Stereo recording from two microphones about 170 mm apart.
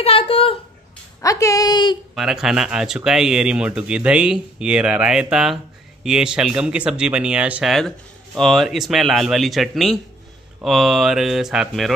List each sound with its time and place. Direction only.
0.0 s a sound: 35° left (ahead or behind)
1.2 s a woman's voice: 20° left (ahead or behind)
2.1 s speech: centre (ahead or behind)